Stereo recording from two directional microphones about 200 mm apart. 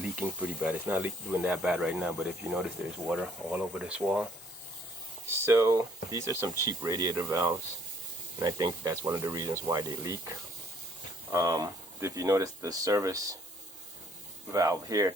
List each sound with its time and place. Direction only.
0.0 s speech: 5° right (ahead or behind)
5.5 s speech: 15° right (ahead or behind)
14.5 s speech: 15° right (ahead or behind)